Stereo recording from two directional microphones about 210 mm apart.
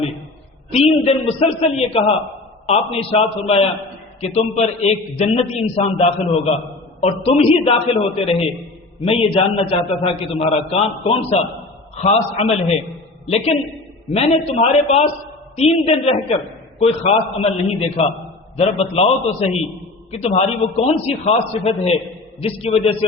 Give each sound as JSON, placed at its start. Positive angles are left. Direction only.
{"t": 0.7, "sound": "a man's voice", "side_deg": 30}